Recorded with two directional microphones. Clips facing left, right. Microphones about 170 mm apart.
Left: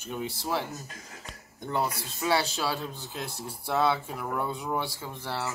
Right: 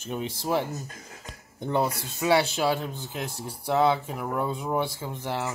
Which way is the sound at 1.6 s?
20° right (ahead or behind).